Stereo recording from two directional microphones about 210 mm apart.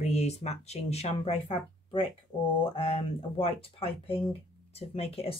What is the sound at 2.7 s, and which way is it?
Speech, 30° left (ahead or behind).